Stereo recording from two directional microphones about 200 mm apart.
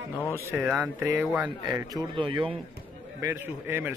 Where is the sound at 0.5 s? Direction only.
5° right (ahead or behind).